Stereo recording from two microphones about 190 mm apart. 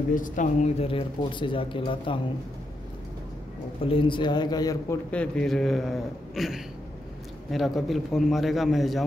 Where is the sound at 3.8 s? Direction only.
30° left (ahead or behind).